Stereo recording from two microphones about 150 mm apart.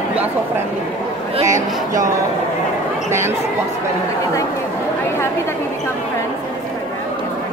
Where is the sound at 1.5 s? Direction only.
20° right (ahead or behind).